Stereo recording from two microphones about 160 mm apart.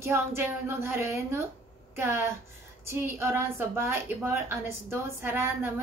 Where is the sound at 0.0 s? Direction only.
15° right (ahead or behind).